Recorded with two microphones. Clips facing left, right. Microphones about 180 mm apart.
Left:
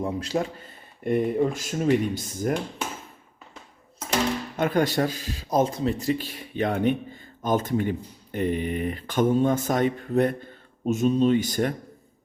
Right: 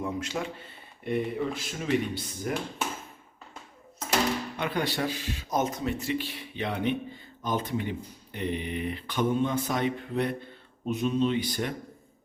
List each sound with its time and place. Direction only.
0.0 s speech: 35° left (ahead or behind)
4.5 s speech: 45° left (ahead or behind)